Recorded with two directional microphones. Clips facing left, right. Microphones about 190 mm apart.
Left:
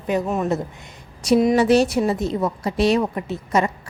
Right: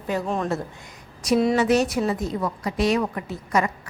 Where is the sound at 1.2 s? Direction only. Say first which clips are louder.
Left 4 dB; 30° left (ahead or behind).